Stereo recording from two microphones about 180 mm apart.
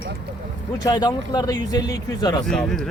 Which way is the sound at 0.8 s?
20° left (ahead or behind).